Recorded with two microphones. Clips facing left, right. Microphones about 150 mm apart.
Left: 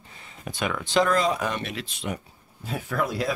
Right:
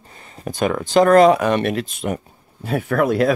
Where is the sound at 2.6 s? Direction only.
65° right (ahead or behind).